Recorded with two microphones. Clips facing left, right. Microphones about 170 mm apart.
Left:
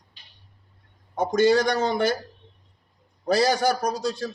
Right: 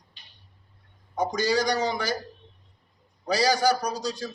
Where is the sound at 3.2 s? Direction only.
55° left (ahead or behind).